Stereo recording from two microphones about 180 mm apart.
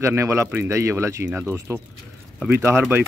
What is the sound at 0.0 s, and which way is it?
Speech, 15° right (ahead or behind).